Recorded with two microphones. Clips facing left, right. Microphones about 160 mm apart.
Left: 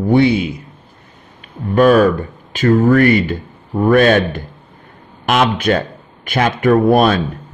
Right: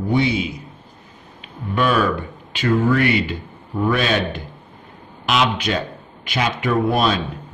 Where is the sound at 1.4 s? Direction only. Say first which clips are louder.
Left 9 dB; 45° left (ahead or behind).